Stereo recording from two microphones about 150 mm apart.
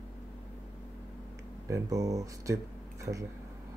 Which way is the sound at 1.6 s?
20° right (ahead or behind).